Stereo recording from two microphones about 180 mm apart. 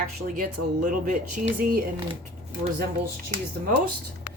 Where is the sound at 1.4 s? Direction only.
55° right (ahead or behind).